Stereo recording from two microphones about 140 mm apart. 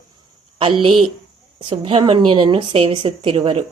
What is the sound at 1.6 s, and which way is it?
Speech, 40° right (ahead or behind).